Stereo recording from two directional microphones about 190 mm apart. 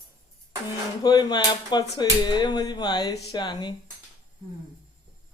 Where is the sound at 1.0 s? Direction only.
20° left (ahead or behind).